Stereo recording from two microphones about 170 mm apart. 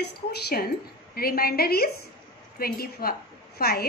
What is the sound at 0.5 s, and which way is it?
A woman's voice, 60° left (ahead or behind).